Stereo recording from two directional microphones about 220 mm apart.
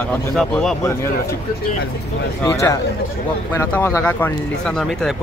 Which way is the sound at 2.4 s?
15° left (ahead or behind).